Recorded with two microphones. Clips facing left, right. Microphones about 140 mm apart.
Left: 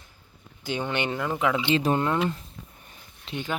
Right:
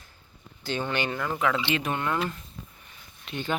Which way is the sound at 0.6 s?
15° left (ahead or behind).